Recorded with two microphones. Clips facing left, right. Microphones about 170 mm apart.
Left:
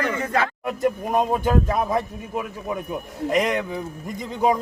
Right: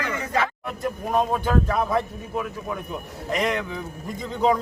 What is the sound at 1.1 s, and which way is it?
Speech, 15° left (ahead or behind).